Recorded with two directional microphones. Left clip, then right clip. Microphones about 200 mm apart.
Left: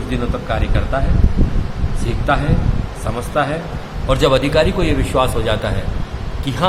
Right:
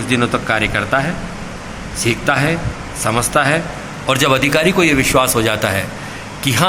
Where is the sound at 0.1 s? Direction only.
20° right (ahead or behind).